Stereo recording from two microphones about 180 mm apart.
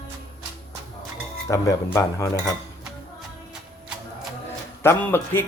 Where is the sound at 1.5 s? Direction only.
15° left (ahead or behind).